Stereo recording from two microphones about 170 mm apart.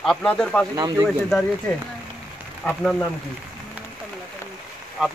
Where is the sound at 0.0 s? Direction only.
5° left (ahead or behind).